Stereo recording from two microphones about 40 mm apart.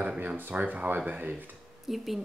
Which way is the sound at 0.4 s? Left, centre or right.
Right.